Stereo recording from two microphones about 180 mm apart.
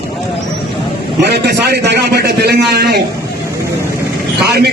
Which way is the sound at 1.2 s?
65° right (ahead or behind).